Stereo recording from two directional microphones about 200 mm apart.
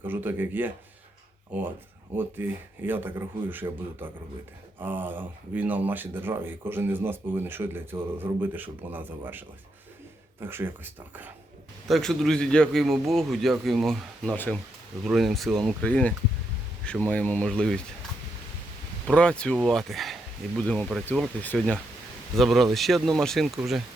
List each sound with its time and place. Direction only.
0.0 s speech: 10° right (ahead or behind)
2.1 s speech: 10° right (ahead or behind)
10.4 s speech: 10° right (ahead or behind)
11.9 s speech: centre (ahead or behind)
19.0 s speech: 5° left (ahead or behind)